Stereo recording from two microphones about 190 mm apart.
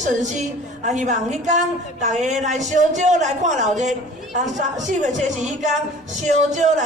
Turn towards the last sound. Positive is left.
turn(degrees=-40)  # may be behind; listen again after turning